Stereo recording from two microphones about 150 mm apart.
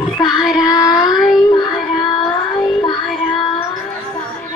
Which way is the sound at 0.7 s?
25° left (ahead or behind).